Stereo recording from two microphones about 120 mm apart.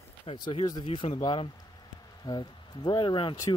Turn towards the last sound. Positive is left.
turn(degrees=35)  # may be behind; listen again after turning